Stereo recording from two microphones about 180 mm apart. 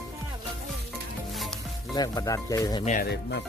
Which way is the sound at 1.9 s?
20° left (ahead or behind).